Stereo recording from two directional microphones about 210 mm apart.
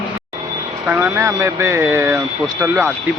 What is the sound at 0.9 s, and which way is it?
Speech, 10° right (ahead or behind).